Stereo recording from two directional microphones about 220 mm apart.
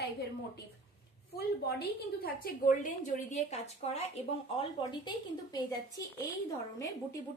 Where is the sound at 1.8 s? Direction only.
40° left (ahead or behind).